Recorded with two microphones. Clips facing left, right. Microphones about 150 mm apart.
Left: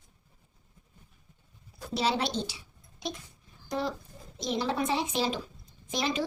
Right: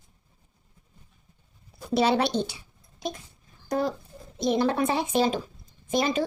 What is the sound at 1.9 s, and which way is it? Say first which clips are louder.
A child's voice: right 6 dB; 60° right (ahead or behind).